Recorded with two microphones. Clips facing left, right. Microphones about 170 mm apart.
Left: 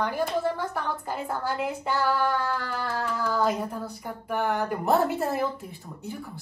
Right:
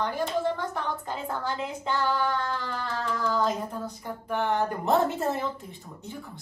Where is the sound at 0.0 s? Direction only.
10° left (ahead or behind).